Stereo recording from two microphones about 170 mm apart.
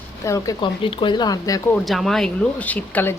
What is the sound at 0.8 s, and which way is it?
Speech, 30° left (ahead or behind).